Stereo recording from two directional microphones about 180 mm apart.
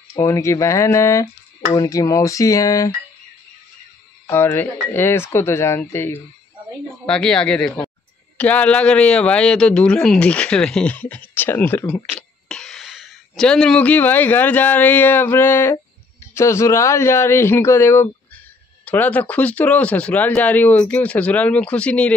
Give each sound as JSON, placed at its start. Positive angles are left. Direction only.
{"t": 0.1, "sound": "a man's voice", "side_deg": 15}
{"t": 4.3, "sound": "a man's voice", "side_deg": 15}